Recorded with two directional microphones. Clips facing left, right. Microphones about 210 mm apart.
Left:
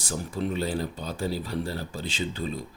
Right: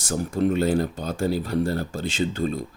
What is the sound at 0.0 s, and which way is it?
Speech, 50° right (ahead or behind).